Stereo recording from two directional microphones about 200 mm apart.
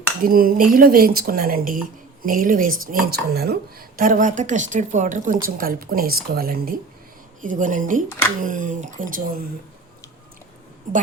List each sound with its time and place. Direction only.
0.3 s speech: 45° right (ahead or behind)
10.9 s speech: 40° right (ahead or behind)